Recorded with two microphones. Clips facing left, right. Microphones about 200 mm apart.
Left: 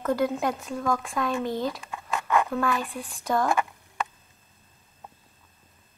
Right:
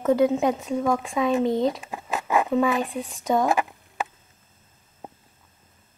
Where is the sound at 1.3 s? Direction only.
30° right (ahead or behind).